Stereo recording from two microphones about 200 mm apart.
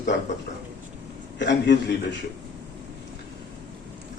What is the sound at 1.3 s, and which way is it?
Speech, 60° left (ahead or behind).